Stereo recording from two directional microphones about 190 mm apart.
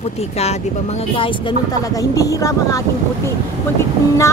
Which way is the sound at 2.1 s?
20° left (ahead or behind).